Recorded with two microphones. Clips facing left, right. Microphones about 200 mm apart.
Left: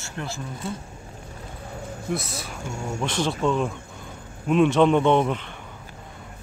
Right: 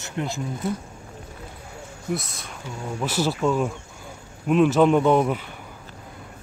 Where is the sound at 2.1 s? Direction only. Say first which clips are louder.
Right 1 dB; centre (ahead or behind).